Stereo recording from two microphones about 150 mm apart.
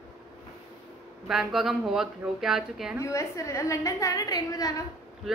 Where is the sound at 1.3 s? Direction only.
Centre (ahead or behind).